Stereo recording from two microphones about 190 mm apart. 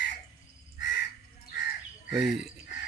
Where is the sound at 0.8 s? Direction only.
60° left (ahead or behind).